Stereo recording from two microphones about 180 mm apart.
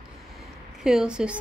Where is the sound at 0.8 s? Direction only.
5° right (ahead or behind).